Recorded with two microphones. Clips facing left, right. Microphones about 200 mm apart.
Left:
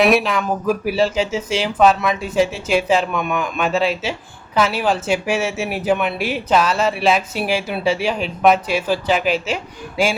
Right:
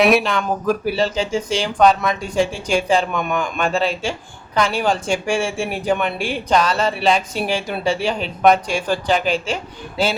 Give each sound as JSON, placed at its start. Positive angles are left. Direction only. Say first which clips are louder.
{"t": 0.0, "sound": "speech", "louder": "even", "side_deg": 0}